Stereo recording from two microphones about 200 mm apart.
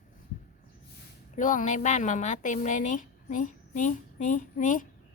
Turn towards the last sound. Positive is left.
turn(degrees=40)  # may be behind; listen again after turning